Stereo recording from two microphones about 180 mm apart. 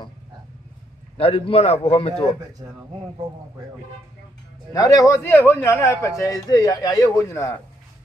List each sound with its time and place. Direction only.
1.1 s a man's voice: 30° left (ahead or behind)
4.7 s a man's voice: 20° left (ahead or behind)